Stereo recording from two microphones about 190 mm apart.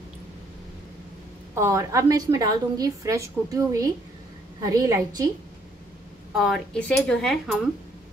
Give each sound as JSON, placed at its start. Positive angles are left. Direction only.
{"t": 1.5, "sound": "a woman's voice", "side_deg": -15}
{"t": 6.3, "sound": "speech", "side_deg": 0}